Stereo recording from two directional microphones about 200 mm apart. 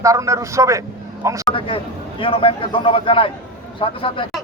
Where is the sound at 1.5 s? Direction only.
25° left (ahead or behind).